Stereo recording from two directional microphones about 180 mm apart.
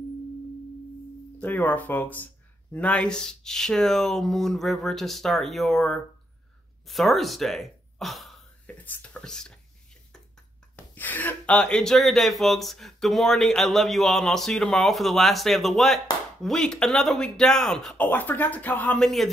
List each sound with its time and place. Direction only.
1.4 s speech: 10° left (ahead or behind)
11.0 s speech: 10° left (ahead or behind)